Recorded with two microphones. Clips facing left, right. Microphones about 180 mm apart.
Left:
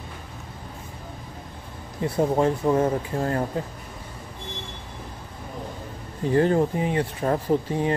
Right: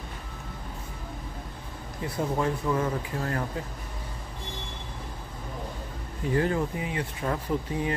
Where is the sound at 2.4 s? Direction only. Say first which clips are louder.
Left 6 dB; 35° left (ahead or behind).